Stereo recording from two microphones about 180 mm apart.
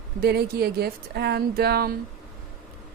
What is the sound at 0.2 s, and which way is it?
A woman's voice, 60° right (ahead or behind).